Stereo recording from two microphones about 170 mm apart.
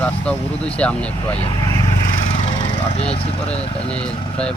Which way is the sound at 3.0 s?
35° left (ahead or behind).